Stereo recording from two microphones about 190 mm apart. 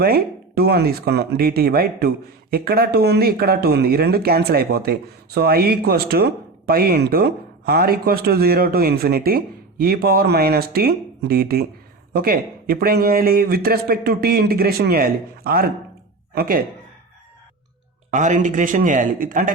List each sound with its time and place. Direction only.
0.0 s speech: 55° right (ahead or behind)
18.1 s speech: 40° right (ahead or behind)